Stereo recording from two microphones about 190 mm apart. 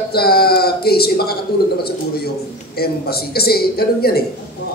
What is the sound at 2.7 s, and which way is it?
A man's voice, 55° left (ahead or behind).